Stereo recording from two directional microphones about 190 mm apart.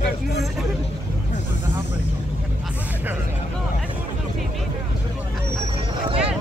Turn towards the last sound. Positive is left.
turn(degrees=-30)  # may be behind; listen again after turning